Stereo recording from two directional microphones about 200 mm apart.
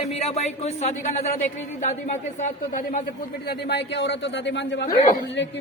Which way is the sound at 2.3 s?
40° left (ahead or behind).